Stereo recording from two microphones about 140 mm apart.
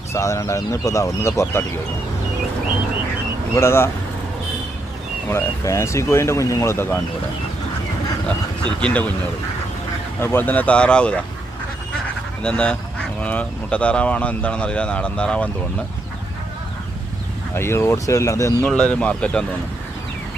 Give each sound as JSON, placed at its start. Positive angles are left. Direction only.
{"t": 0.1, "sound": "speech", "side_deg": 20}
{"t": 3.5, "sound": "speech", "side_deg": 20}
{"t": 5.3, "sound": "speech", "side_deg": 20}
{"t": 8.8, "sound": "speech", "side_deg": 10}
{"t": 10.2, "sound": "speech", "side_deg": 15}
{"t": 12.4, "sound": "speech", "side_deg": 5}
{"t": 17.5, "sound": "speech", "side_deg": 20}
{"t": 18.6, "sound": "speech", "side_deg": 5}